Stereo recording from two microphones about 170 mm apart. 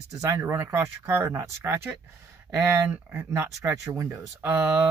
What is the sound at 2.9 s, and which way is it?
Speech, 10° right (ahead or behind).